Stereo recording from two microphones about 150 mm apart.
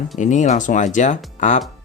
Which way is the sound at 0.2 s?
55° left (ahead or behind).